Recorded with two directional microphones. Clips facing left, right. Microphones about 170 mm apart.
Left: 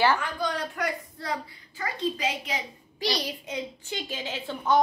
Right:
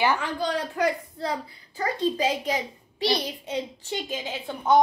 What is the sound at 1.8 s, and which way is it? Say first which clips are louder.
Speech: right 5 dB; 35° right (ahead or behind).